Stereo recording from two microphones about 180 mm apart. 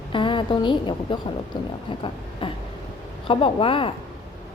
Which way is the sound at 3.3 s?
30° left (ahead or behind).